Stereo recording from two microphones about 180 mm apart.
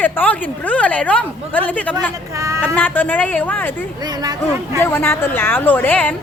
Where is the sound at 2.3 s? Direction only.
15° right (ahead or behind).